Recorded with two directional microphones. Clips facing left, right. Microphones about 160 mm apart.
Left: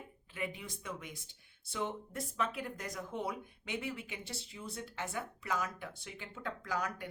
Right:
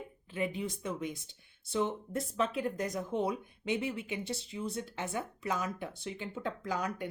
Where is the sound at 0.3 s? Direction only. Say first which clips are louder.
Right 7 dB; 25° right (ahead or behind).